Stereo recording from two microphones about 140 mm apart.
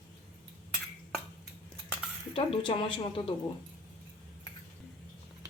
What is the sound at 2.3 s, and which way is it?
Speech, 40° left (ahead or behind).